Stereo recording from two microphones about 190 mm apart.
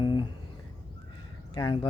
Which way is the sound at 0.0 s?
25° left (ahead or behind).